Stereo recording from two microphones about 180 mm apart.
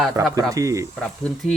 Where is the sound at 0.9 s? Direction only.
5° left (ahead or behind).